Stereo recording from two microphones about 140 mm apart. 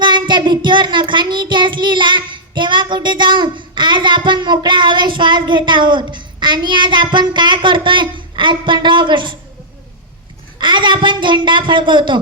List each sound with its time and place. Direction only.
0.0 s child singing: 35° right (ahead or behind)
10.6 s a woman's voice: 35° right (ahead or behind)